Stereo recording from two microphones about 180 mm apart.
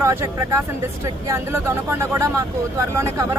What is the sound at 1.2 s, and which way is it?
Speech, 15° right (ahead or behind).